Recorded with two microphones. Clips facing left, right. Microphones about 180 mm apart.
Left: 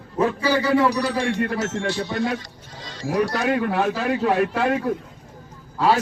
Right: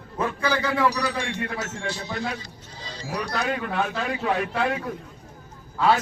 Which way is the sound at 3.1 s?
45° left (ahead or behind).